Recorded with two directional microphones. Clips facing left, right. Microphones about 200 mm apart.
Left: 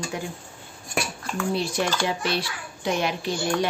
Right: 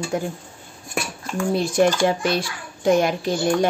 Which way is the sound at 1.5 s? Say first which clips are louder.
Right 9 dB; 50° right (ahead or behind).